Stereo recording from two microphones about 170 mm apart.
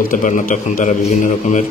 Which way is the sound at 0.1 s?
50° left (ahead or behind).